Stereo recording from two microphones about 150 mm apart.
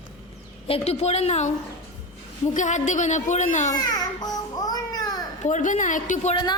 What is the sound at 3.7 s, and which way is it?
Baby cry, 25° left (ahead or behind).